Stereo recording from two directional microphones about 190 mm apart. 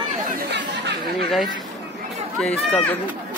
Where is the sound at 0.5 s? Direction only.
60° right (ahead or behind).